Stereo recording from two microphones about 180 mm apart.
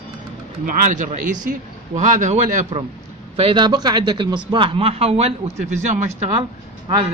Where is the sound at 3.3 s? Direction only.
30° right (ahead or behind).